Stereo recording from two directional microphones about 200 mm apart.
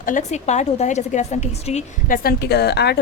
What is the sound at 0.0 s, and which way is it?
A woman's voice, 40° left (ahead or behind).